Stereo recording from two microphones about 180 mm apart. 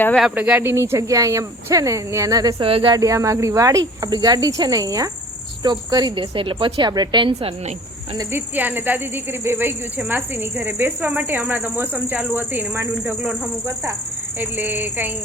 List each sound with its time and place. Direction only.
0.2 s speech: 5° right (ahead or behind); by 7.5 s 25° right (ahead or behind)
8.1 s speech: 15° right (ahead or behind)
14.3 s speech: 10° right (ahead or behind)